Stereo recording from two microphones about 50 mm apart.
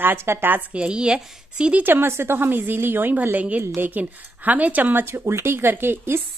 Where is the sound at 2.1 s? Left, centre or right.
Right.